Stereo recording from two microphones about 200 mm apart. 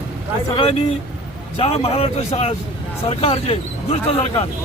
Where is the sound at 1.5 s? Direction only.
30° left (ahead or behind).